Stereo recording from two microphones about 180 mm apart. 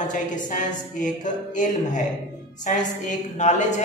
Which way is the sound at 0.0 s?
45° left (ahead or behind).